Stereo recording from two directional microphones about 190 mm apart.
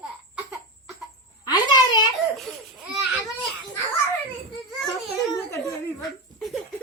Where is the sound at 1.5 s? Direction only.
20° left (ahead or behind).